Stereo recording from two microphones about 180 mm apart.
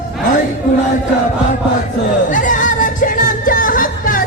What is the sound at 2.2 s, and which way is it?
Music, 45° left (ahead or behind).